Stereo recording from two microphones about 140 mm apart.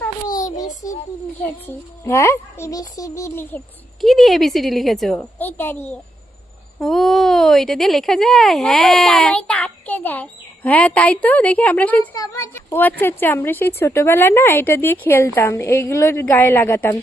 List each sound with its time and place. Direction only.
0.3 s child singing: 25° left (ahead or behind)
1.6 s a child's voice: 20° left (ahead or behind)
4.0 s speech: centre (ahead or behind)
5.4 s a woman's voice: 15° left (ahead or behind)
6.7 s speech: centre (ahead or behind)
12.1 s a woman's voice: 25° left (ahead or behind)